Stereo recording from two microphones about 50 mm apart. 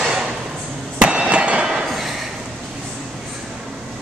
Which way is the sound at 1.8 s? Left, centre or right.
Centre.